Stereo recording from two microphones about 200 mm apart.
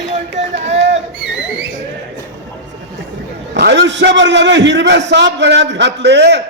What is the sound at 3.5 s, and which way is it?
A man's voice, 60° right (ahead or behind).